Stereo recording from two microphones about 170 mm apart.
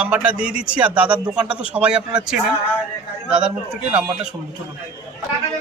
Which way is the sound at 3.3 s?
5° right (ahead or behind).